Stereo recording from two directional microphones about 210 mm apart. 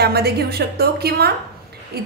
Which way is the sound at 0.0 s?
50° right (ahead or behind).